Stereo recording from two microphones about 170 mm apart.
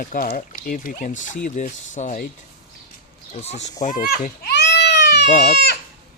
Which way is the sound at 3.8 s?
60° left (ahead or behind).